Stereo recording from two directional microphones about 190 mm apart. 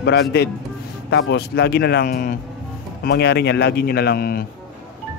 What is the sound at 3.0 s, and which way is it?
Speech, 60° left (ahead or behind).